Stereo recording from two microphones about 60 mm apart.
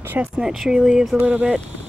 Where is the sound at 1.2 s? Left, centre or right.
Right.